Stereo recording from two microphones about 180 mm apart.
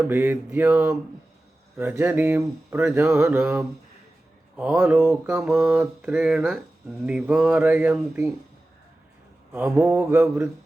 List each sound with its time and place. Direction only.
0.1 s speech: 10° right (ahead or behind)
6.0 s a sound: 5° right (ahead or behind)
7.0 s speech: 5° right (ahead or behind)
9.5 s speech: 5° right (ahead or behind)